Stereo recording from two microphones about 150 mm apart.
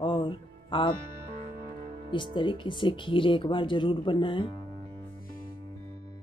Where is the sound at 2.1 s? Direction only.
30° left (ahead or behind).